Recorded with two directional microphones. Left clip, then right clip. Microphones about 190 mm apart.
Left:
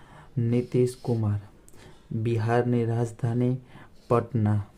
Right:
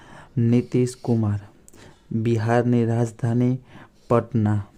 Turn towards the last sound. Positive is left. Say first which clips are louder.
# right 4 dB
turn(degrees=-25)  # may be behind; listen again after turning